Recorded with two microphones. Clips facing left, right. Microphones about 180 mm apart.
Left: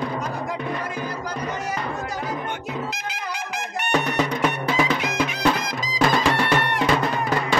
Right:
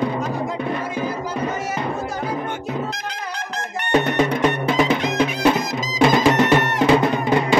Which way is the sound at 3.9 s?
20° right (ahead or behind).